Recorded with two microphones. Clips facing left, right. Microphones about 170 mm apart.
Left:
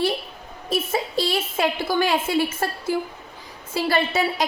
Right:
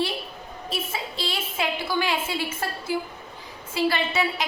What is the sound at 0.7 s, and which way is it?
A woman's voice, 40° left (ahead or behind).